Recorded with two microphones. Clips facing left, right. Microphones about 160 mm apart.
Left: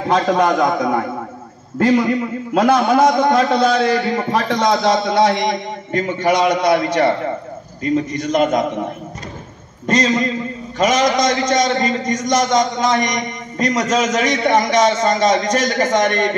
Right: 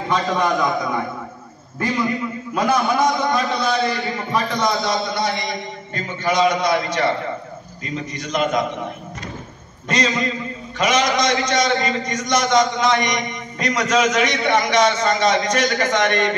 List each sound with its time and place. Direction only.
0.3 s a man's voice: 60° left (ahead or behind)
1.8 s a man's voice: 70° left (ahead or behind)
3.3 s a man's voice: 85° left; by 8.6 s 50° left (ahead or behind)
9.8 s a man's voice: 45° left (ahead or behind)